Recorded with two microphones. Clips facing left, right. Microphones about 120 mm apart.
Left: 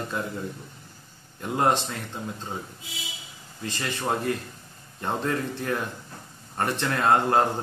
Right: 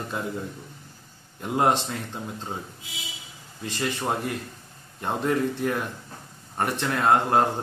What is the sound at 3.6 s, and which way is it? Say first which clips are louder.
A man's voice: right 2 dB; 20° right (ahead or behind).